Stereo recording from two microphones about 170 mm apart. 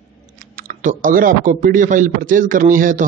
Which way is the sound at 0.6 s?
55° right (ahead or behind).